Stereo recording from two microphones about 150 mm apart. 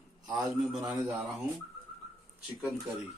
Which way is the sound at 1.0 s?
15° right (ahead or behind).